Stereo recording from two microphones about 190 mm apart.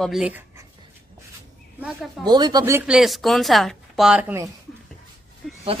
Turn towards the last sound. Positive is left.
turn(degrees=0)  # may be behind; listen again after turning